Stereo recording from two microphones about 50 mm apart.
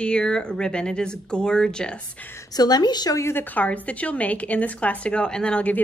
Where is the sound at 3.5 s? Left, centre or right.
Left.